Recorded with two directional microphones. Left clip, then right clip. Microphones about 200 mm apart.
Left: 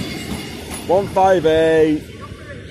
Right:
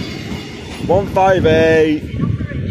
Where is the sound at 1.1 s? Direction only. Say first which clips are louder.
Right 2 dB; 20° right (ahead or behind).